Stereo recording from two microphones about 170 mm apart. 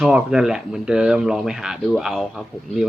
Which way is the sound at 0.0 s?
5° right (ahead or behind).